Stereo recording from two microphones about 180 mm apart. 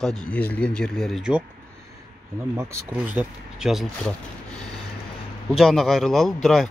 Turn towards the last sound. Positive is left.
turn(degrees=5)  # may be behind; listen again after turning